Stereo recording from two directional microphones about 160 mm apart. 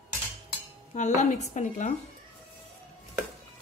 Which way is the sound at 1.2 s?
50° left (ahead or behind).